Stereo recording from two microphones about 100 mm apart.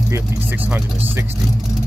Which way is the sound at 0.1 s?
20° right (ahead or behind).